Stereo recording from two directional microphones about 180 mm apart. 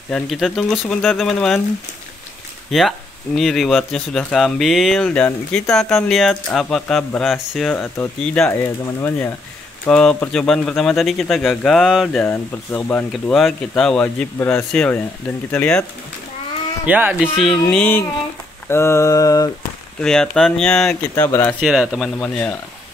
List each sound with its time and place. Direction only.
0.1 s speech: centre (ahead or behind)
2.7 s speech: centre (ahead or behind)
12.3 s speech: 10° left (ahead or behind)
15.5 s mantra: 5° left (ahead or behind)
16.8 s speech: 10° right (ahead or behind)
17.6 s mantra: 5° left (ahead or behind)
20.0 s speech: 5° left (ahead or behind)
21.1 s mantra: 15° left (ahead or behind)
21.5 s speech: centre (ahead or behind)